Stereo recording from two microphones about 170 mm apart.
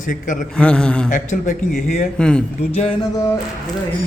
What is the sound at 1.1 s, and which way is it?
Speech, 50° left (ahead or behind).